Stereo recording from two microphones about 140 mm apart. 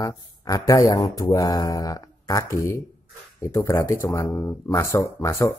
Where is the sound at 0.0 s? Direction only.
25° left (ahead or behind).